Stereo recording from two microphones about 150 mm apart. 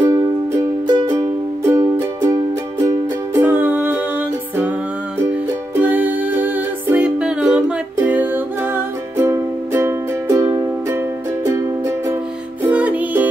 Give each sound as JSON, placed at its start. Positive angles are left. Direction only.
{"t": 0.0, "sound": "music", "side_deg": -25}
{"t": 3.3, "sound": "music", "side_deg": -10}
{"t": 5.8, "sound": "music", "side_deg": -10}
{"t": 12.6, "sound": "music", "side_deg": -10}